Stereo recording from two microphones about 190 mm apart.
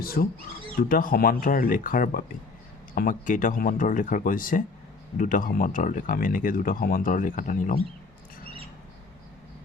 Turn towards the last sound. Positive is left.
turn(degrees=45)  # may be behind; listen again after turning